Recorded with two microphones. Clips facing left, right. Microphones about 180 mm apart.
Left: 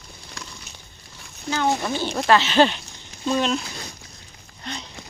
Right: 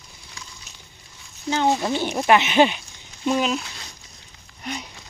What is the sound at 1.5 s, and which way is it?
Speech, 25° right (ahead or behind).